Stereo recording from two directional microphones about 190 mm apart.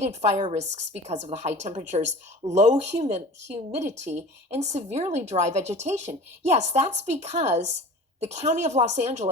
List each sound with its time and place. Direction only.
0.0 s a woman's voice: 35° right (ahead or behind)